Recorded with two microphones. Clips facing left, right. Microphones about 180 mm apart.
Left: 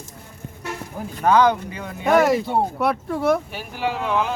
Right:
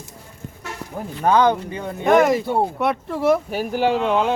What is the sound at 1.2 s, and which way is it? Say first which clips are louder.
Speech: even; 30° right (ahead or behind).